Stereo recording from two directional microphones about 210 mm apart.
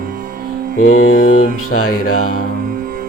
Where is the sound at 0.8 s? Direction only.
85° left.